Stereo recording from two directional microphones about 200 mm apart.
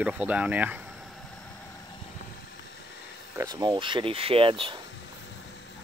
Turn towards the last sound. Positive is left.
turn(degrees=-25)  # may be behind; listen again after turning